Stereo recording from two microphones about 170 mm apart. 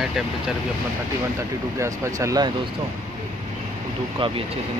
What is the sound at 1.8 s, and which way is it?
Speech, 20° right (ahead or behind).